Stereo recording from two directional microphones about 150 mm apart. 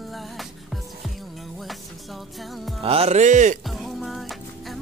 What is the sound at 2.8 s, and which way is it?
Speech, 40° right (ahead or behind).